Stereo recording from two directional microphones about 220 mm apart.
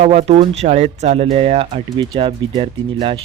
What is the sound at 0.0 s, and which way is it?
Speech, 25° right (ahead or behind).